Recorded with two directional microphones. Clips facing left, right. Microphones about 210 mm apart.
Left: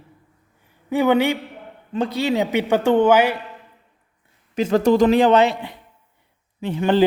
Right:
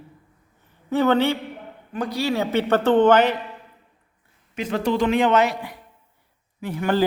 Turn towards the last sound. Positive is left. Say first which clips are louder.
# left 4 dB
turn(degrees=25)  # may be behind; listen again after turning